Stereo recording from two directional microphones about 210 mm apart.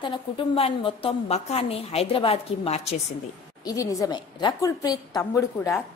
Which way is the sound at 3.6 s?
15° left (ahead or behind).